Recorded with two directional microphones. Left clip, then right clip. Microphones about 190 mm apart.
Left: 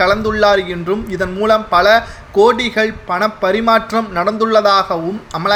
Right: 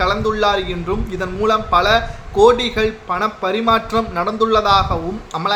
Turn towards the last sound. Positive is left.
turn(degrees=20)  # may be behind; listen again after turning